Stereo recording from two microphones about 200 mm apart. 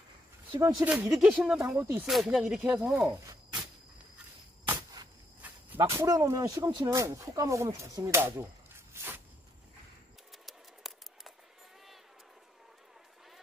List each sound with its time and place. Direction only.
0.5 s speech: 15° right (ahead or behind)
0.9 s speech: 5° right (ahead or behind)
5.8 s speech: 15° right (ahead or behind)
10.4 s scissors: centre (ahead or behind)